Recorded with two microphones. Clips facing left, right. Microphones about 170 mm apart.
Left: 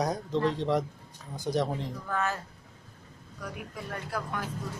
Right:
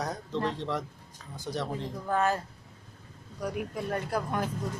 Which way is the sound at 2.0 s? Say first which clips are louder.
Right 5 dB; 35° right (ahead or behind).